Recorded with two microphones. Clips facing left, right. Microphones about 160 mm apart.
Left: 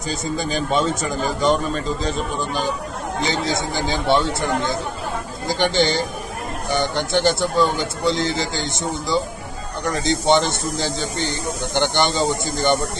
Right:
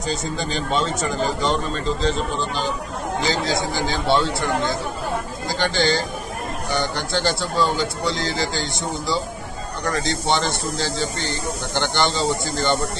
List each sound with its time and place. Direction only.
0.1 s speech: 10° left (ahead or behind)